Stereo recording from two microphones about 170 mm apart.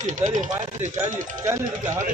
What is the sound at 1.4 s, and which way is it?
Speech, 15° right (ahead or behind).